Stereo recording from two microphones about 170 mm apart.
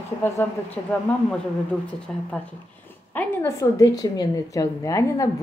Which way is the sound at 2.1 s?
5° left (ahead or behind).